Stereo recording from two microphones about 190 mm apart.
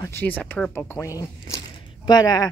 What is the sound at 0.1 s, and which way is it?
Speech, 10° left (ahead or behind).